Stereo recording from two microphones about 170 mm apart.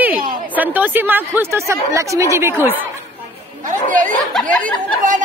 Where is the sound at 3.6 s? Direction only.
50° right (ahead or behind).